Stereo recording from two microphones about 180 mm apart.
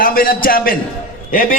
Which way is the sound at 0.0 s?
50° left (ahead or behind).